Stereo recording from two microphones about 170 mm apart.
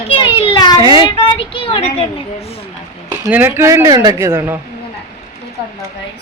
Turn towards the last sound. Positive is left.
turn(degrees=-15)  # may be behind; listen again after turning